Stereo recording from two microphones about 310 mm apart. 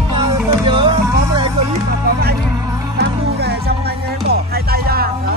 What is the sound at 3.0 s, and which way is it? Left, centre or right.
Music, right.